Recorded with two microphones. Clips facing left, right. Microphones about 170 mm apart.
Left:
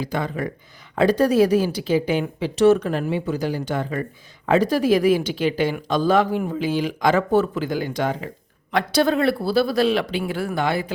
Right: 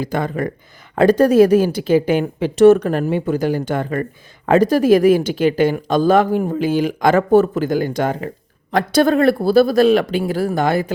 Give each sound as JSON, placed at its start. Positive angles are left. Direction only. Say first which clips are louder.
{"t": 0.0, "sound": "speech", "louder": "right 4 dB", "side_deg": -50}